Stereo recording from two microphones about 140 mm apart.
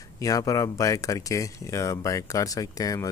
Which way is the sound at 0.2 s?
25° left (ahead or behind).